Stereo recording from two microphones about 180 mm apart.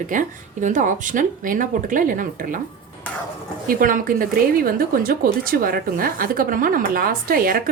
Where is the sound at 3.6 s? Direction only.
50° right (ahead or behind).